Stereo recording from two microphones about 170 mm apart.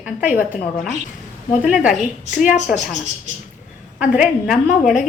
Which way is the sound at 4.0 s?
5° right (ahead or behind).